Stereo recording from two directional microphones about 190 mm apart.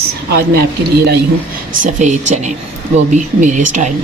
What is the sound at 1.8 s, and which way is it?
Speech, 40° right (ahead or behind).